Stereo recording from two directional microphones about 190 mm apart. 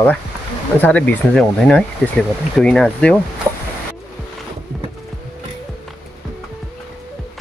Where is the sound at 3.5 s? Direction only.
15° right (ahead or behind).